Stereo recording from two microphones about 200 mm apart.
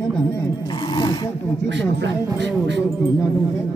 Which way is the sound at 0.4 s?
20° left (ahead or behind).